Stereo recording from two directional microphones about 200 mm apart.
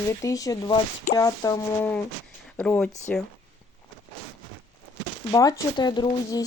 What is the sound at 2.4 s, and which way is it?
Speech, 5° left (ahead or behind).